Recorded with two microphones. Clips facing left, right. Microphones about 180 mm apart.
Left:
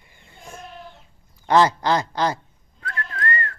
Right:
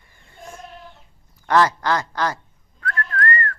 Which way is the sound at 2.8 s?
20° left (ahead or behind).